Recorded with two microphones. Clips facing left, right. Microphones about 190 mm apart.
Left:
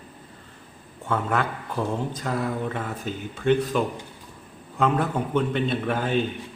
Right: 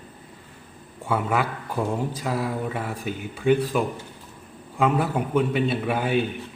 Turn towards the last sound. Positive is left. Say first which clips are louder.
# right 1 dB
turn(degrees=-10)  # may be behind; listen again after turning